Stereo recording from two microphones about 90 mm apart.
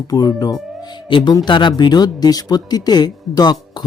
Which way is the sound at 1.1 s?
65° left (ahead or behind).